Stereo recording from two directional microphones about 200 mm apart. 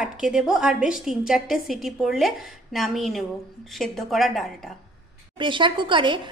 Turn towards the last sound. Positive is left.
turn(degrees=-25)  # may be behind; listen again after turning